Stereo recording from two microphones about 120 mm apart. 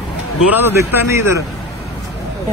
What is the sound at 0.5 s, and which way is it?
Speech, 20° right (ahead or behind).